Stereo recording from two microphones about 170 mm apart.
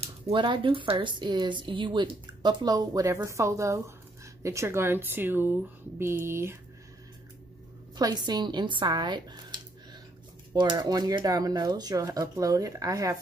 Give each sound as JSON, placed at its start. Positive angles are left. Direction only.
{"t": 0.0, "sound": "speech", "side_deg": -30}
{"t": 7.9, "sound": "speech", "side_deg": -25}